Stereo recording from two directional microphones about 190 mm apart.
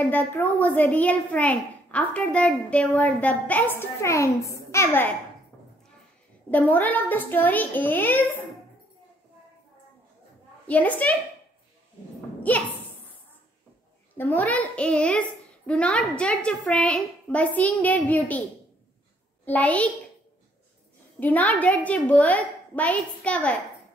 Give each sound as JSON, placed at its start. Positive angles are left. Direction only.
{"t": 0.0, "sound": "a child's voice", "side_deg": 10}
{"t": 6.5, "sound": "a child's voice", "side_deg": 10}
{"t": 10.7, "sound": "a child's voice", "side_deg": 10}
{"t": 12.4, "sound": "a sound", "side_deg": 10}
{"t": 14.1, "sound": "a child's voice", "side_deg": 10}
{"t": 19.4, "sound": "a child's voice", "side_deg": 10}
{"t": 21.2, "sound": "a child's voice", "side_deg": 10}